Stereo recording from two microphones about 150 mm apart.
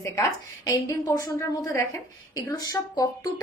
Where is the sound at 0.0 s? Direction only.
25° left (ahead or behind).